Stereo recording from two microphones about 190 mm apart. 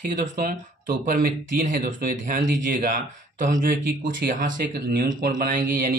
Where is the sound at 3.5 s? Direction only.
45° right (ahead or behind).